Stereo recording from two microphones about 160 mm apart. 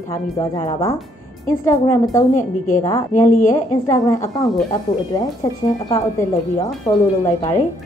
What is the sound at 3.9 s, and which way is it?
Speech, 20° left (ahead or behind).